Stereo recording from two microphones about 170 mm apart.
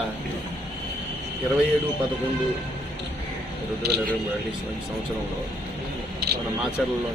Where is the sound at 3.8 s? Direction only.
70° right (ahead or behind).